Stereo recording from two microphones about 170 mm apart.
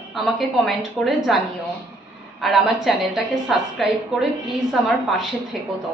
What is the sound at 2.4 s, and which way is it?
A woman's voice, centre (ahead or behind).